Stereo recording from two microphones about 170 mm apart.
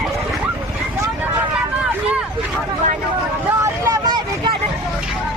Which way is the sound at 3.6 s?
20° right (ahead or behind).